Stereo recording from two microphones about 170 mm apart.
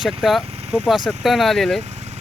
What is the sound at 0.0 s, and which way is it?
Speech, centre (ahead or behind).